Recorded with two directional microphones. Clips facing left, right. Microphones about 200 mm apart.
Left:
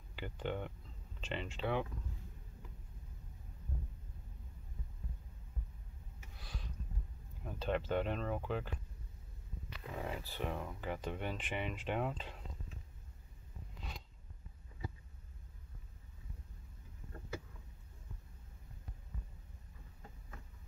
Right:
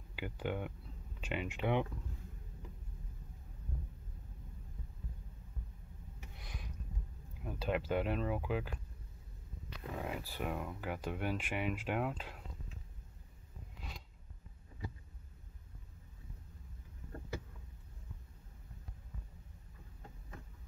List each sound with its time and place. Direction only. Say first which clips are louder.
0.1 s speech: right 1 dB; 10° right (ahead or behind)
6.3 s a sound: left 1 dB; 20° right (ahead or behind)
7.4 s speech: right 1 dB; 10° right (ahead or behind)
9.9 s speech: right 1 dB; 5° right (ahead or behind)